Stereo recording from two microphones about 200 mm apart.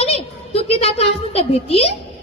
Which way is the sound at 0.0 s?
30° left (ahead or behind).